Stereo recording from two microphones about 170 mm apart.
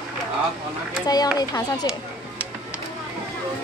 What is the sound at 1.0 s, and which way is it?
Speech, 25° left (ahead or behind).